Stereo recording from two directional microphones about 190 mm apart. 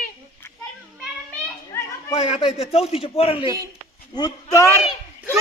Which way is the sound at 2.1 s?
30° left (ahead or behind).